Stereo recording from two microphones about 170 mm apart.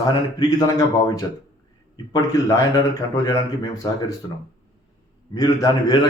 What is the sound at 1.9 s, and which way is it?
Speech, 20° left (ahead or behind).